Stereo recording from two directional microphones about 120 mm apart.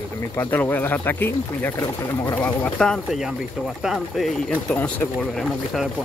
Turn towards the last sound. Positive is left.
turn(degrees=0)  # may be behind; listen again after turning